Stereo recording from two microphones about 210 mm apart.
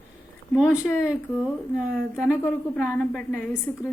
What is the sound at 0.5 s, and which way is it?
A woman's voice, 5° right (ahead or behind).